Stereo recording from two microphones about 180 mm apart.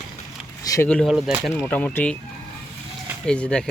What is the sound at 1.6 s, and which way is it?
Speech, 10° left (ahead or behind).